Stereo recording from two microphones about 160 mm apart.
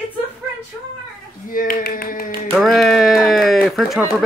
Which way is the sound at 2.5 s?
Centre (ahead or behind).